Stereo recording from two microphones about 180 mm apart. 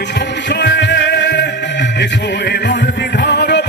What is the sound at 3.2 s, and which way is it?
Music, 65° left (ahead or behind).